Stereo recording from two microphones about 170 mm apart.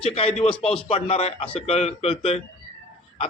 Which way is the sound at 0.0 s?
35° left (ahead or behind).